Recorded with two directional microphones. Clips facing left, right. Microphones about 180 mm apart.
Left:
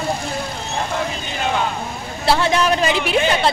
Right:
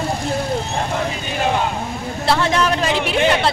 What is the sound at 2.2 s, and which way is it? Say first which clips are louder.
Speech: left 1 dB; 5° left (ahead or behind).